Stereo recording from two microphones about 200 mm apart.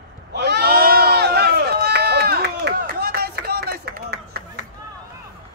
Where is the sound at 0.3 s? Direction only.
55° right (ahead or behind).